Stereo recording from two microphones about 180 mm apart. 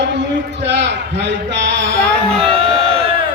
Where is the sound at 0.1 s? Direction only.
80° right.